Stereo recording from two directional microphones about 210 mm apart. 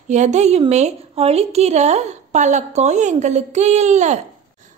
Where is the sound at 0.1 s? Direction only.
35° right (ahead or behind).